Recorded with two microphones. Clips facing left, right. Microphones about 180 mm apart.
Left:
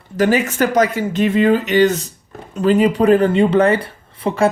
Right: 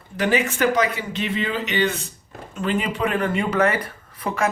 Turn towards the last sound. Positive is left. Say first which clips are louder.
# left 7 dB
turn(degrees=30)  # may be behind; listen again after turning